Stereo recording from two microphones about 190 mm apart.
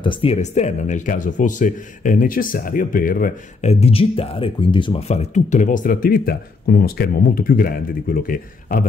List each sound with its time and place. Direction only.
0.0 s speech: 25° left (ahead or behind); by 3.7 s 45° left (ahead or behind)
3.8 s speech: 30° left (ahead or behind); by 8.8 s 45° left (ahead or behind)